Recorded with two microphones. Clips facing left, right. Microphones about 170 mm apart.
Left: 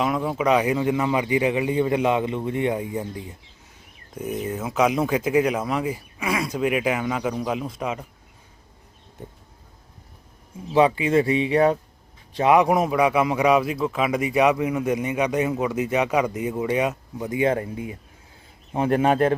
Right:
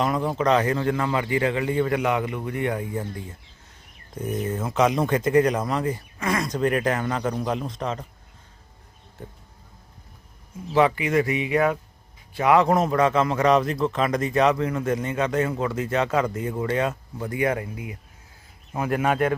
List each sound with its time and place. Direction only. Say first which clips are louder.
0.0 s a man's voice: even; 5° left (ahead or behind)
10.7 s speech: left 2 dB; 20° left (ahead or behind)
12.4 s a man's voice: left 1 dB; 20° left (ahead or behind)